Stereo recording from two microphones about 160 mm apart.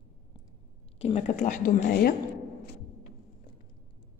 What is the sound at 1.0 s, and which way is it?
Speech, 40° left (ahead or behind).